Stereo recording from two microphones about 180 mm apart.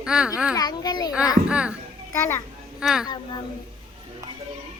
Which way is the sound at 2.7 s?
5° right (ahead or behind).